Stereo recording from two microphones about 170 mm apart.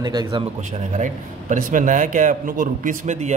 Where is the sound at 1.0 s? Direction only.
50° right (ahead or behind).